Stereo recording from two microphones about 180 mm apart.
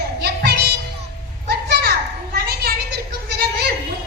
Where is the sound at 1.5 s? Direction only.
60° right (ahead or behind).